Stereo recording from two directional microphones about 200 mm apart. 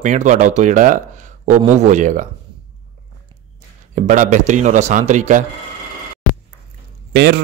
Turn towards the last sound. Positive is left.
turn(degrees=-55)  # may be behind; listen again after turning